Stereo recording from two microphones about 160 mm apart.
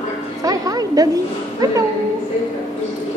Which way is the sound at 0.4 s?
20° right (ahead or behind).